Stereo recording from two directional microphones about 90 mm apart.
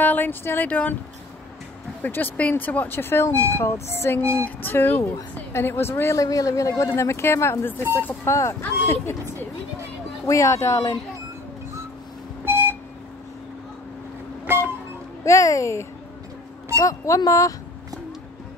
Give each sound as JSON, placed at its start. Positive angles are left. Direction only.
{"t": 0.0, "sound": "speech", "side_deg": 20}
{"t": 2.0, "sound": "speech", "side_deg": 20}
{"t": 4.2, "sound": "music", "side_deg": -30}
{"t": 4.6, "sound": "a woman's voice", "side_deg": 30}
{"t": 10.2, "sound": "a woman's voice", "side_deg": 35}
{"t": 12.4, "sound": "beep", "side_deg": -25}
{"t": 14.5, "sound": "vehicle", "side_deg": -25}
{"t": 15.2, "sound": "a woman's voice", "side_deg": 35}